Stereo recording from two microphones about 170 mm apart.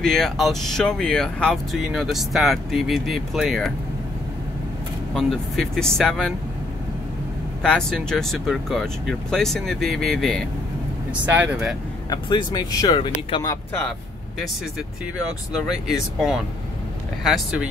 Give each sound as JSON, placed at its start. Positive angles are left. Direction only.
{"t": 0.0, "sound": "speech", "side_deg": 0}
{"t": 5.1, "sound": "speech", "side_deg": 0}
{"t": 7.6, "sound": "speech", "side_deg": 5}
{"t": 11.2, "sound": "speech", "side_deg": -10}
{"t": 12.1, "sound": "speech", "side_deg": 25}
{"t": 15.5, "sound": "speech", "side_deg": -5}